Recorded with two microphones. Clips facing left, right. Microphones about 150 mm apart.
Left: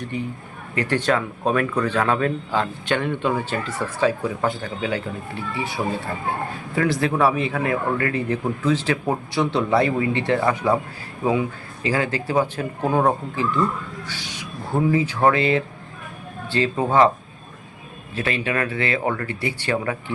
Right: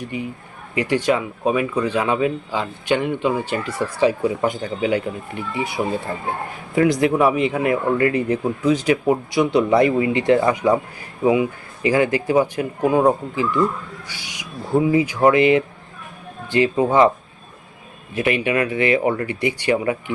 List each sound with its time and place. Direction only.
0.0 s speech: 10° right (ahead or behind)
14.1 s a sound: 10° right (ahead or behind)
14.8 s speech: 15° right (ahead or behind)
18.1 s speech: 15° right (ahead or behind)